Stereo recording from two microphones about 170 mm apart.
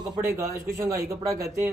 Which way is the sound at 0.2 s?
20° right (ahead or behind).